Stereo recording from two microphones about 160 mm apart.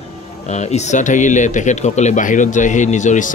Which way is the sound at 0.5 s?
45° left (ahead or behind).